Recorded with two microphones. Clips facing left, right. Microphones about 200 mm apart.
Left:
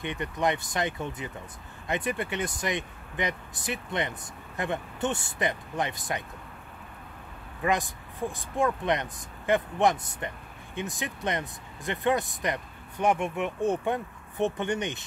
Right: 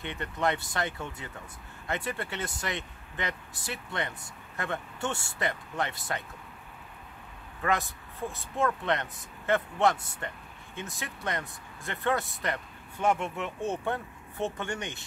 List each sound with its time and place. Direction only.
0.0 s speech: 15° left (ahead or behind)
7.6 s speech: 15° left (ahead or behind)